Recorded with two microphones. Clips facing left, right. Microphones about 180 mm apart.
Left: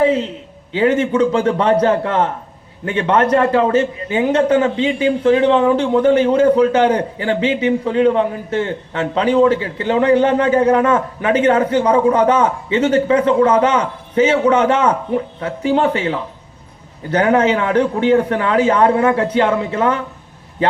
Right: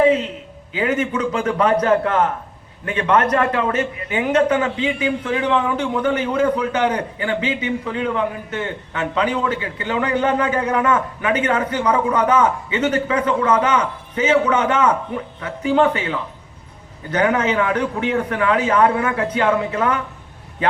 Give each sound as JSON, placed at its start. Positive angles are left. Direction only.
{"t": 0.7, "sound": "a man's voice", "side_deg": 30}